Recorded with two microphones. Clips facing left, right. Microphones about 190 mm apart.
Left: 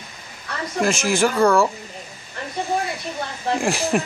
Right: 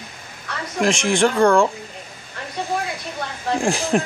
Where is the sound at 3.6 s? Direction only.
Centre (ahead or behind).